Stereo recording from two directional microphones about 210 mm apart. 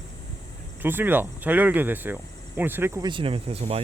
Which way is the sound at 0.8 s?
10° right (ahead or behind).